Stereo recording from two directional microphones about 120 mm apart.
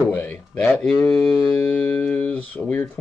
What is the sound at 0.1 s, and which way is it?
Speech, 15° left (ahead or behind).